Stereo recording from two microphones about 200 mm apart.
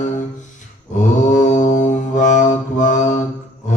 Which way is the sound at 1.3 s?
40° left (ahead or behind).